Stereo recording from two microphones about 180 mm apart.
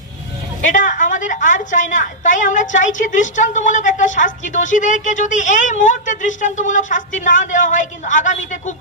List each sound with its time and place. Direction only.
0.7 s a woman's voice: 45° left (ahead or behind)